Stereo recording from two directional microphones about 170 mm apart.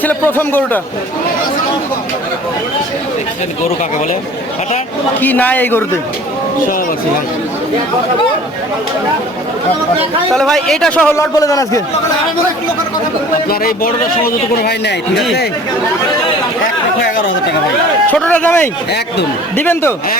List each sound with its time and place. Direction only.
0.0 s a man's voice: 10° left (ahead or behind)
5.2 s a man's voice: 10° left (ahead or behind)
10.3 s a man's voice: centre (ahead or behind)
11.2 s a man's voice: 20° left (ahead or behind)
13.5 s a man's voice: 60° left (ahead or behind)
18.1 s a man's voice: 10° left (ahead or behind)